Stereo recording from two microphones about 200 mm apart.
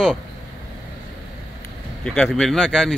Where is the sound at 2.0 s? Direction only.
5° left (ahead or behind).